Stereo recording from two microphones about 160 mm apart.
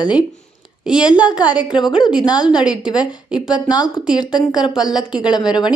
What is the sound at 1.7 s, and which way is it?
Speech, 25° left (ahead or behind).